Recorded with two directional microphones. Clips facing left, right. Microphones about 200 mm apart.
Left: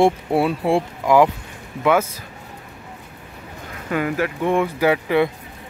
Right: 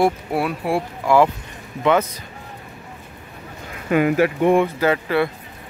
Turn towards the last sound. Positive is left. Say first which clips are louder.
# left 1 dB
turn(degrees=15)  # may be behind; listen again after turning